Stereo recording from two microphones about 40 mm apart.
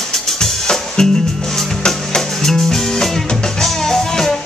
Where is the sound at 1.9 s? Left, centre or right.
Centre.